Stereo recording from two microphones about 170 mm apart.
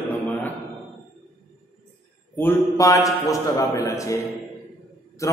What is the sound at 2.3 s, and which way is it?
A man's voice, 15° left (ahead or behind).